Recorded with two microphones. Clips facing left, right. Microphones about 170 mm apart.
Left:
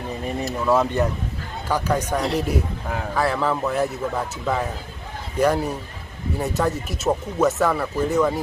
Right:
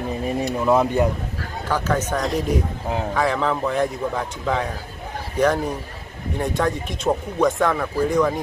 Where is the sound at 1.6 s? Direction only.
10° left (ahead or behind).